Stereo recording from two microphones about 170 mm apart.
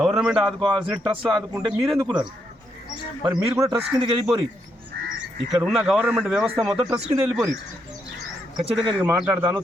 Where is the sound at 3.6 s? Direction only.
25° right (ahead or behind).